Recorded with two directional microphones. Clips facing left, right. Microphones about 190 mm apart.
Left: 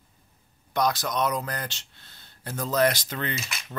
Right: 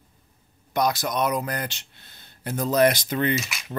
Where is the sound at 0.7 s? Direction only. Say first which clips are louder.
Right 2 dB; 10° right (ahead or behind).